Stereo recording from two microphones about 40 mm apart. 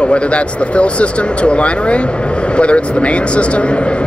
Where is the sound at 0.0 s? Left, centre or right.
Left.